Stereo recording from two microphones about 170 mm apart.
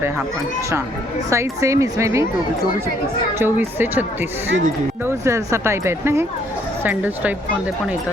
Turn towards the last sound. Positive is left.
turn(degrees=-10)  # may be behind; listen again after turning